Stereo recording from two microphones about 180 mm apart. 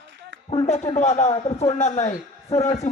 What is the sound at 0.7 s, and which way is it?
Speech, 40° left (ahead or behind).